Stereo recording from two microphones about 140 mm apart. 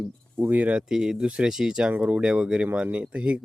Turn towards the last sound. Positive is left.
turn(degrees=-10)  # may be behind; listen again after turning